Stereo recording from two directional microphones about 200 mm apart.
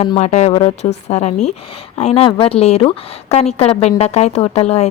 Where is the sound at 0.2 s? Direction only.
35° left (ahead or behind).